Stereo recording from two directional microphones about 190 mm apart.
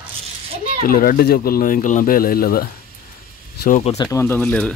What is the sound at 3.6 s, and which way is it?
Speech, 40° left (ahead or behind).